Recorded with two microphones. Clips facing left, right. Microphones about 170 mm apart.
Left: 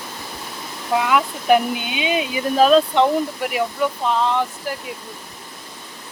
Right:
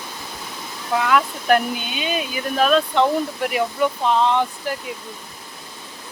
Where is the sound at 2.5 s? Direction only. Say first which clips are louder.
Left 4 dB; 30° left (ahead or behind).